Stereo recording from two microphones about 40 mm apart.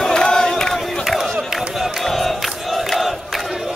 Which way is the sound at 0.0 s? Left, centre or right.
Centre.